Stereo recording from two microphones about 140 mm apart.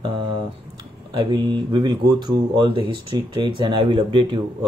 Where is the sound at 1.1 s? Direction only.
35° right (ahead or behind).